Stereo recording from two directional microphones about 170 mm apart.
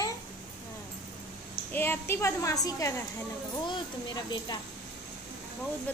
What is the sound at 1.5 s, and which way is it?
A woman's voice, 15° left (ahead or behind).